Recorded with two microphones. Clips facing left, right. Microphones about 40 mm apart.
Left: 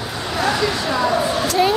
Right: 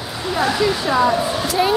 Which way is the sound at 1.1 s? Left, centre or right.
Centre.